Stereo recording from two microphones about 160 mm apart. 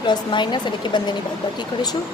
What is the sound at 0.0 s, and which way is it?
Speech, 30° left (ahead or behind).